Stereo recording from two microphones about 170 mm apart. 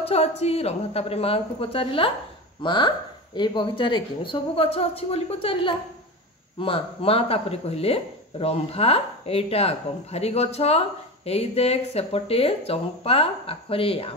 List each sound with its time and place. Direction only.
0.0 s a woman's voice: 35° left (ahead or behind)